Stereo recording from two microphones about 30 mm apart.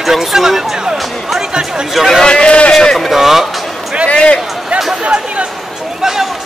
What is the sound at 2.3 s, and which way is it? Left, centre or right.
Speech, left.